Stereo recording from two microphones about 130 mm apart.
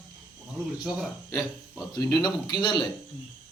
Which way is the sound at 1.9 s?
30° left (ahead or behind).